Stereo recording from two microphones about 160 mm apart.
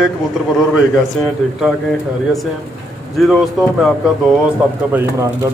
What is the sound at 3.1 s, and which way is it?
Mantra, centre (ahead or behind).